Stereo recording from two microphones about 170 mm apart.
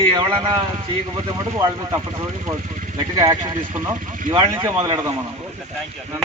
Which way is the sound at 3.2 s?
20° right (ahead or behind).